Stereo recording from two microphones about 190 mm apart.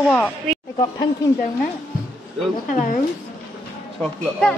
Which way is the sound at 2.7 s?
45° left (ahead or behind).